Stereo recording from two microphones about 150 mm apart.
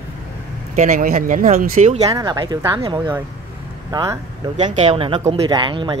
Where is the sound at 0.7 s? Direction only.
65° right (ahead or behind).